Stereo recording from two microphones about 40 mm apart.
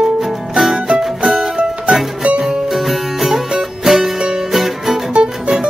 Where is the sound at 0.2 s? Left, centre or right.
Centre.